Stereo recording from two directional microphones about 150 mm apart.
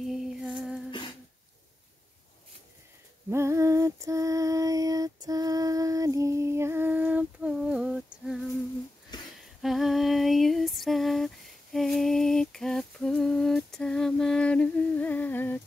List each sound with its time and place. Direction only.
0.0 s lullaby: 5° right (ahead or behind)
3.3 s lullaby: 20° right (ahead or behind)
9.4 s lullaby: centre (ahead or behind)